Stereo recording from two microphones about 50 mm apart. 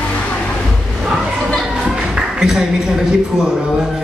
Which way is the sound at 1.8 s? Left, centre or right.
Centre.